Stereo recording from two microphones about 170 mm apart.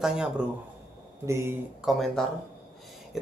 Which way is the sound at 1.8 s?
Centre (ahead or behind).